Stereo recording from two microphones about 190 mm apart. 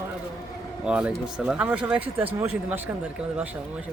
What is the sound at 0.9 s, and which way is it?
Speech, 5° right (ahead or behind).